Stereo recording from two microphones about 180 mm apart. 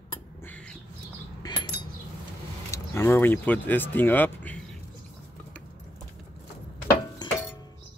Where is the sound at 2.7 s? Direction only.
15° left (ahead or behind).